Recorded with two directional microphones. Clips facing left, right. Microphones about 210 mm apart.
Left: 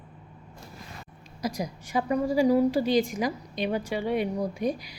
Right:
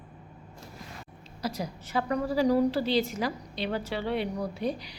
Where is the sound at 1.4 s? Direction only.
15° left (ahead or behind).